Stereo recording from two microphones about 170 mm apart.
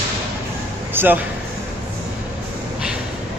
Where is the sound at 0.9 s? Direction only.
10° right (ahead or behind).